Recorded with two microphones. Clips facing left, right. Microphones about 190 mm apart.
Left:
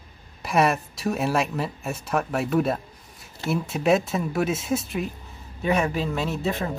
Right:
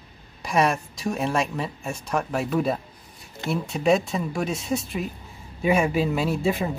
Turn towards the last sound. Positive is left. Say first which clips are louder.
# right 3 dB
turn(degrees=-10)  # may be behind; listen again after turning